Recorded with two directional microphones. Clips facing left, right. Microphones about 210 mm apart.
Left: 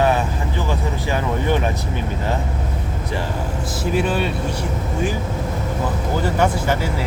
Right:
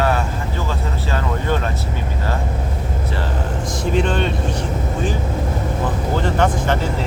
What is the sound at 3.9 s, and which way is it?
Speech, 5° left (ahead or behind).